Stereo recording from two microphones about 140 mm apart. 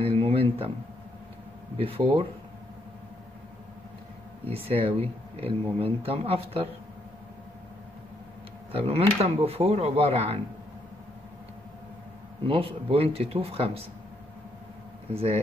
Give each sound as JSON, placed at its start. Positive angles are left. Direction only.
{"t": 0.0, "sound": "a sound", "side_deg": -40}
{"t": 1.8, "sound": "speech", "side_deg": -40}
{"t": 4.5, "sound": "speech", "side_deg": -40}
{"t": 8.7, "sound": "speech", "side_deg": -45}
{"t": 12.4, "sound": "speech", "side_deg": -40}